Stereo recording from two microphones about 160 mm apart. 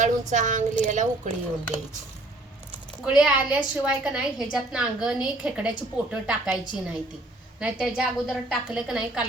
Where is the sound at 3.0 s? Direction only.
5° right (ahead or behind).